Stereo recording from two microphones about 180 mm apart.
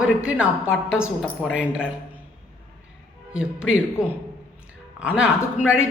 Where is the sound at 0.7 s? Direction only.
90° left.